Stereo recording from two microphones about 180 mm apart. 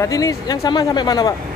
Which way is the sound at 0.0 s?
20° left (ahead or behind).